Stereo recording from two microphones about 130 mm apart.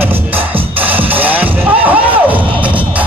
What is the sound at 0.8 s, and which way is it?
Music, 15° right (ahead or behind).